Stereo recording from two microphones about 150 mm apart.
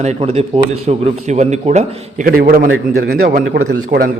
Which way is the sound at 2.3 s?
75° right (ahead or behind).